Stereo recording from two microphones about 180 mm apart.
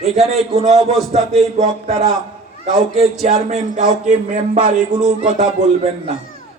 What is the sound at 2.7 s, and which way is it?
A man's voice, 40° right (ahead or behind).